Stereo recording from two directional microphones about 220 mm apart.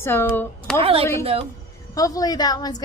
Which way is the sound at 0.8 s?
25° right (ahead or behind).